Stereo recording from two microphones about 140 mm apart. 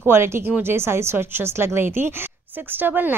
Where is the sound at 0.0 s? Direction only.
15° right (ahead or behind).